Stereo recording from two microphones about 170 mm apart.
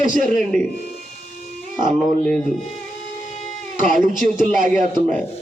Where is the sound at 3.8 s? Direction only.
50° right (ahead or behind).